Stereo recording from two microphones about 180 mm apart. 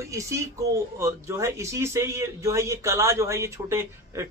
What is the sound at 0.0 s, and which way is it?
Speech, 15° right (ahead or behind).